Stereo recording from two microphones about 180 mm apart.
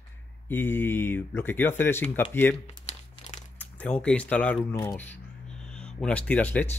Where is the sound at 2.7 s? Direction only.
40° left (ahead or behind).